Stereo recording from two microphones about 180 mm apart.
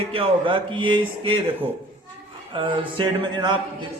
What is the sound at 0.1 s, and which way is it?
Speech, 30° right (ahead or behind).